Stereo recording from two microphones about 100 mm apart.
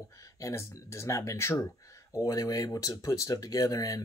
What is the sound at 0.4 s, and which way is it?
Speech, 30° left (ahead or behind).